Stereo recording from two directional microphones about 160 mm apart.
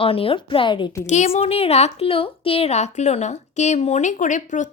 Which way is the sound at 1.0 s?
45° left (ahead or behind).